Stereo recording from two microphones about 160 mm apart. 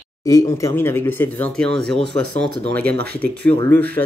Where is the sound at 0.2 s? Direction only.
20° left (ahead or behind).